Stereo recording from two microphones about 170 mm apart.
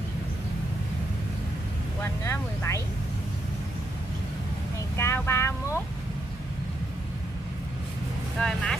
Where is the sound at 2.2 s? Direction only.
15° left (ahead or behind).